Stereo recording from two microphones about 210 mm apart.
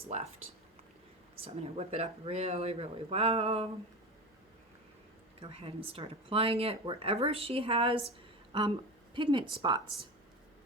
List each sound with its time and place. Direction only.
1.7 s speech: 30° right (ahead or behind)
5.4 s a woman's voice: 25° right (ahead or behind)